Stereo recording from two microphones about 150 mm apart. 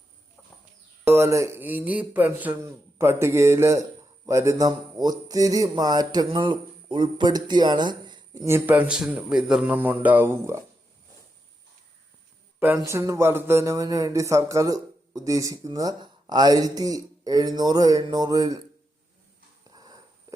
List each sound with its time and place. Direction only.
1.0 s speech: 20° right (ahead or behind)
8.4 s speech: 15° right (ahead or behind)
12.5 s speech: 10° right (ahead or behind)